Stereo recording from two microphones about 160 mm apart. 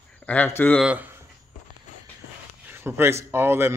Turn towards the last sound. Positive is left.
turn(degrees=-15)  # may be behind; listen again after turning